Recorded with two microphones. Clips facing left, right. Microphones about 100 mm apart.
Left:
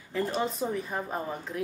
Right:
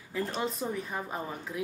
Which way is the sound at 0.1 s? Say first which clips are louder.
Left 3 dB; centre (ahead or behind).